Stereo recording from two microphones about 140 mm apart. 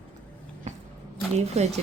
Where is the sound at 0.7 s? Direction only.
55° right (ahead or behind).